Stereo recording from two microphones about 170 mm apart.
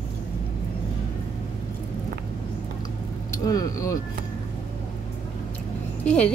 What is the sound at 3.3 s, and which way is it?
Speech, 20° left (ahead or behind).